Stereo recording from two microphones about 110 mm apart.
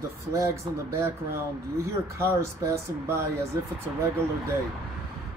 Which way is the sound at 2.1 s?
25° right (ahead or behind).